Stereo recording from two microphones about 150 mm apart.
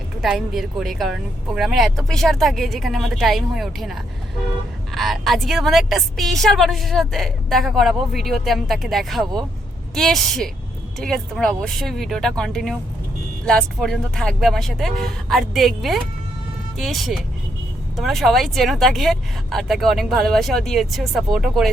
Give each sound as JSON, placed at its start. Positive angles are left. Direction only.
{"t": 0.2, "sound": "a woman's voice", "side_deg": 0}